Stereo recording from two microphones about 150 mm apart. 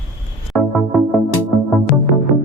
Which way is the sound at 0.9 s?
Centre (ahead or behind).